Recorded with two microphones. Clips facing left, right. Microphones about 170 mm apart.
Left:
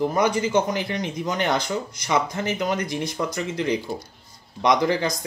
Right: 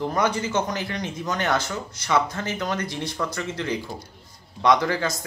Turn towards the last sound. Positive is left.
turn(degrees=15)  # may be behind; listen again after turning